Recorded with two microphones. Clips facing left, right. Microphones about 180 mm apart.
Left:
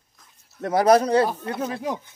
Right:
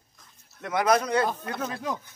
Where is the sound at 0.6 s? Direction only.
35° left (ahead or behind).